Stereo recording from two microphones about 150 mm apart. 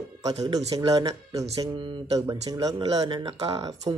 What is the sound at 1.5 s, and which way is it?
Speech, 35° right (ahead or behind).